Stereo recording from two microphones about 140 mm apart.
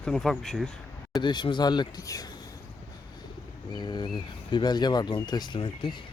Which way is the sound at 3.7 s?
30° left (ahead or behind).